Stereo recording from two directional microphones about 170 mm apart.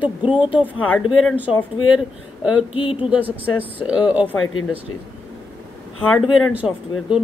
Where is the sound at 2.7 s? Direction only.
30° left (ahead or behind).